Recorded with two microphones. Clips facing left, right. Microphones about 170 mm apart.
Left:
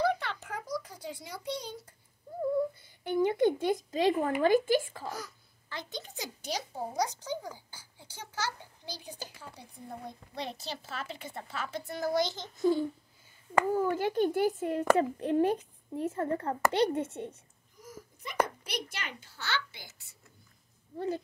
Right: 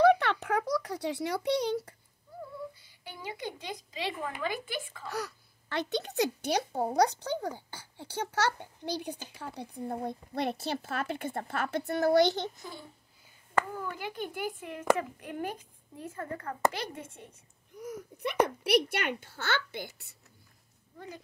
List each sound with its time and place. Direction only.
0.0 s a sound: 65° right (ahead or behind)
2.8 s speech: 55° left (ahead or behind)
5.1 s speech: 70° right (ahead or behind)
13.7 s speech: 40° left (ahead or behind)
17.7 s a sound: 65° right (ahead or behind)
18.6 s speech: 65° right (ahead or behind)